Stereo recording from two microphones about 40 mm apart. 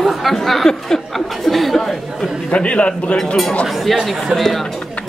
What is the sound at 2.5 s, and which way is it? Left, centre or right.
Speech, left.